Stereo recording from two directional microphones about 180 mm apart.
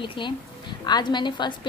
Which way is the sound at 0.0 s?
25° left (ahead or behind).